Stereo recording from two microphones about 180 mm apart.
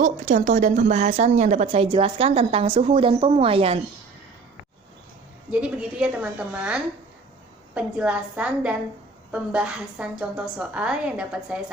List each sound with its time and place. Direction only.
0.0 s a woman's voice: 40° right (ahead or behind)
5.5 s a woman's voice: 5° right (ahead or behind)